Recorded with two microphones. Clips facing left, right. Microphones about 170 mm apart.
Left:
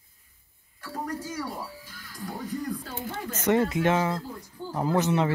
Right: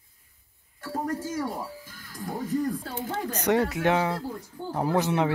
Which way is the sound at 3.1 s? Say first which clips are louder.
Even; 15° right (ahead or behind).